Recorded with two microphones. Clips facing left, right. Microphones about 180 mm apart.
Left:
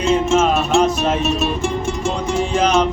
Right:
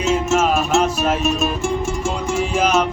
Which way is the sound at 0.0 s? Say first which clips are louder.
Left 2 dB; 5° right (ahead or behind).